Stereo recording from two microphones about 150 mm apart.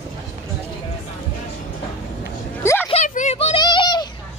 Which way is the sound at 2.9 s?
50° left (ahead or behind).